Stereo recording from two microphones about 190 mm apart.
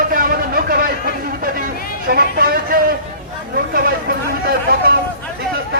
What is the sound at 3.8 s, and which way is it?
Chatter, 50° right (ahead or behind).